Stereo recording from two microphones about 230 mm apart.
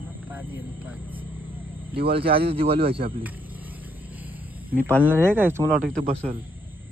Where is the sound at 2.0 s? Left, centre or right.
Right.